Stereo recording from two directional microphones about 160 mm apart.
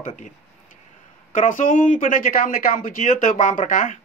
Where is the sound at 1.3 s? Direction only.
55° left (ahead or behind).